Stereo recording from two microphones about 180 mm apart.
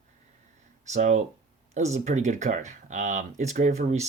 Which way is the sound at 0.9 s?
40° right (ahead or behind).